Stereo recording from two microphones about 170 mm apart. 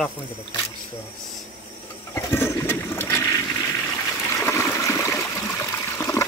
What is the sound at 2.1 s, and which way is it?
Toilet flush, 15° left (ahead or behind).